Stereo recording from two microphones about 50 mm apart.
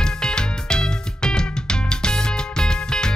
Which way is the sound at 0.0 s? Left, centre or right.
Centre.